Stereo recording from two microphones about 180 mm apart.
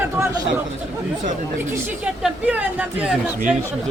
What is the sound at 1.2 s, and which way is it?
Speech, 45° right (ahead or behind).